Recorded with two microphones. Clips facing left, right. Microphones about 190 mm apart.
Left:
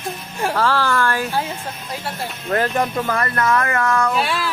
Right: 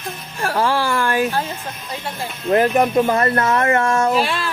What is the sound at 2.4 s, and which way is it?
Speech, 20° right (ahead or behind).